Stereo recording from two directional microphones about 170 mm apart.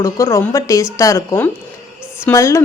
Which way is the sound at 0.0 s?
15° left (ahead or behind).